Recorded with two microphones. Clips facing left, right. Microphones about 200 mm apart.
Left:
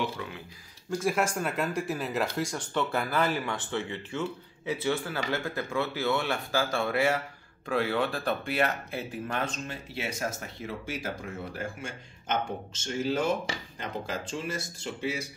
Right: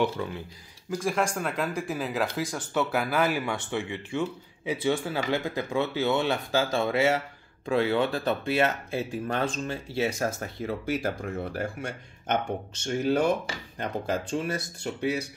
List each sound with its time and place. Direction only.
0.8 s speech: 5° left (ahead or behind); by 10.0 s 30° right (ahead or behind)
10.4 s speech: 55° right (ahead or behind)
12.8 s speech: 60° right (ahead or behind)